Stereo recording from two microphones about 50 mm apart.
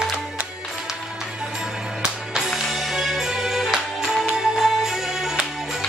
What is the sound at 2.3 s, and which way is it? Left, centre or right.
Music, centre.